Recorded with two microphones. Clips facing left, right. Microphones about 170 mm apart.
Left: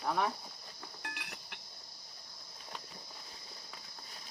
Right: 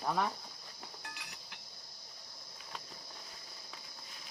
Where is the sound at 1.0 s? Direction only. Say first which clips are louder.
Left 4 dB; 60° left (ahead or behind).